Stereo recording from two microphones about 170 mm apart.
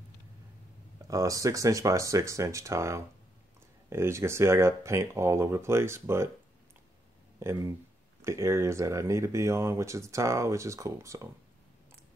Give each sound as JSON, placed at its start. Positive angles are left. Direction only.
{"t": 1.0, "sound": "speech", "side_deg": -20}
{"t": 7.3, "sound": "speech", "side_deg": -15}